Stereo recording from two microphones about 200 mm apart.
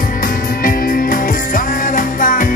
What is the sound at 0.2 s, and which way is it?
Music, 45° left (ahead or behind).